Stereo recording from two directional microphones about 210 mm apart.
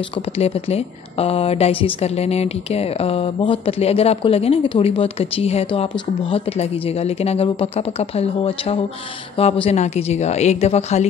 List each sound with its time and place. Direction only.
0.4 s a woman's voice: 30° left (ahead or behind)